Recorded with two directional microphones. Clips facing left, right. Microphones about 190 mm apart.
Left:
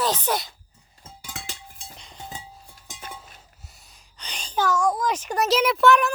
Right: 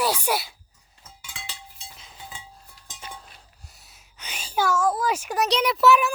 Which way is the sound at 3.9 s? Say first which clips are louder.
Even; 5° right (ahead or behind).